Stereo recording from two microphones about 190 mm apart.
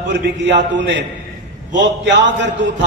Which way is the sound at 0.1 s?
65° right (ahead or behind).